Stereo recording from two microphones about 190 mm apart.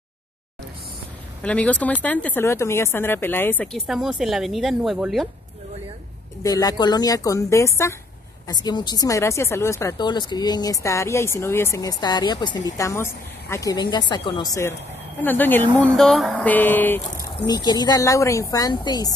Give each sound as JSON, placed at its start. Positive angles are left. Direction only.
{"t": 1.4, "sound": "speech", "side_deg": 5}
{"t": 6.4, "sound": "speech", "side_deg": 20}
{"t": 17.5, "sound": "speech", "side_deg": 20}